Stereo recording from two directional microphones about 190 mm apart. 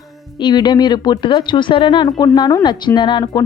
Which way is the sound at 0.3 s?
25° left (ahead or behind).